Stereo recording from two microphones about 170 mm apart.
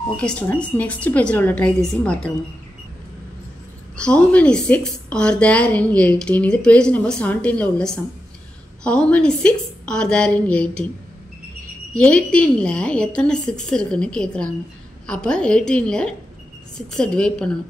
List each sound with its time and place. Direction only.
0.2 s a woman's voice: 5° left (ahead or behind)
3.9 s a woman's voice: 5° left (ahead or behind)
11.9 s a woman's voice: 5° left (ahead or behind)